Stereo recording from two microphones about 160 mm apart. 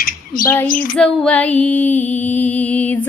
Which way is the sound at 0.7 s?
55° left (ahead or behind).